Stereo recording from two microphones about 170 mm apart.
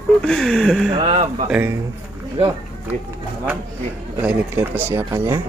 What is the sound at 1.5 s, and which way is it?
Speech, 10° right (ahead or behind).